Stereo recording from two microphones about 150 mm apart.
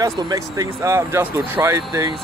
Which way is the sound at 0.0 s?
25° right (ahead or behind).